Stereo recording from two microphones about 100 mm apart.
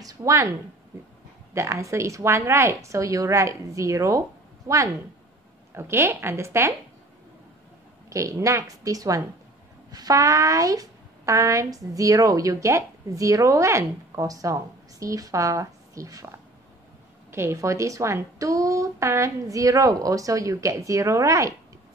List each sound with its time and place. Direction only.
0.0 s speech: 35° right (ahead or behind)
1.5 s a woman's voice: 30° right (ahead or behind)
8.1 s a woman's voice: 30° right (ahead or behind)
17.3 s a woman's voice: 25° right (ahead or behind)